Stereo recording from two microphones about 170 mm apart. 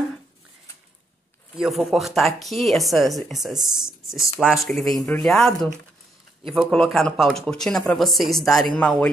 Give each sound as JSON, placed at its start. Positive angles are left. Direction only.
{"t": 1.5, "sound": "speech", "side_deg": 0}